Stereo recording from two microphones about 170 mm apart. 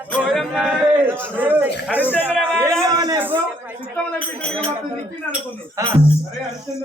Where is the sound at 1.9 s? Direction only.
10° left (ahead or behind).